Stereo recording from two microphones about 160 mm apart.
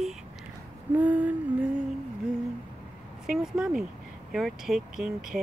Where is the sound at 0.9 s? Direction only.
10° right (ahead or behind).